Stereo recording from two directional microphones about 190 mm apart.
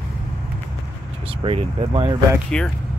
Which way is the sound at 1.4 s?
25° right (ahead or behind).